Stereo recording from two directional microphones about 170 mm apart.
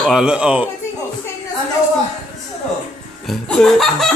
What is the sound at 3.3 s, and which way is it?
Speech, centre (ahead or behind).